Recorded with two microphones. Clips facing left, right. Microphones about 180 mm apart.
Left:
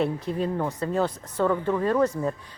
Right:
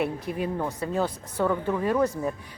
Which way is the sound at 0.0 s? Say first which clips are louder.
Left 2 dB; 10° right (ahead or behind).